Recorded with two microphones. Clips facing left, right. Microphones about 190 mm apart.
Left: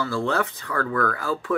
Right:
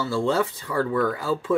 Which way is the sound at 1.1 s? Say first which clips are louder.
Right 2 dB; 25° right (ahead or behind).